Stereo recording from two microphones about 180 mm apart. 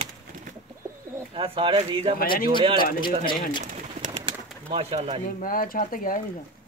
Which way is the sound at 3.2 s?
55° left (ahead or behind).